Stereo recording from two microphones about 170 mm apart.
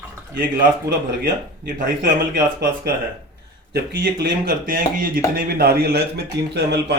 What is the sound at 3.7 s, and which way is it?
Speech, 70° right (ahead or behind).